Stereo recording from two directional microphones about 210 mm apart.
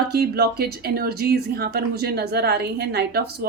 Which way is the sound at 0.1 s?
50° right (ahead or behind).